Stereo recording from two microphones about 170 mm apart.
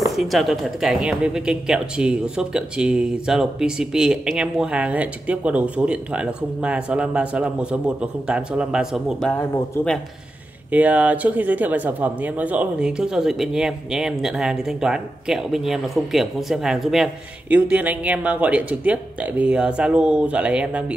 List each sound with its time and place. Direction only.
0.1 s speech: centre (ahead or behind)
9.8 s speech: 15° left (ahead or behind)
10.7 s speech: 10° right (ahead or behind)